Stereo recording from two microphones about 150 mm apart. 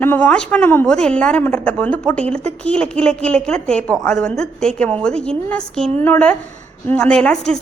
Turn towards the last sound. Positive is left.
turn(degrees=5)  # may be behind; listen again after turning